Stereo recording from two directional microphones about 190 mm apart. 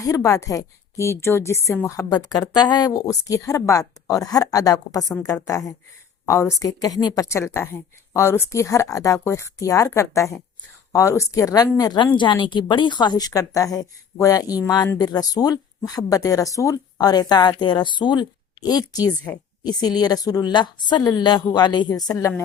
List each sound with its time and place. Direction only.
0.0 s a woman's voice: 15° left (ahead or behind)